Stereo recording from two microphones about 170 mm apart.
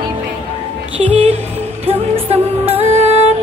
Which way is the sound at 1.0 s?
35° right (ahead or behind).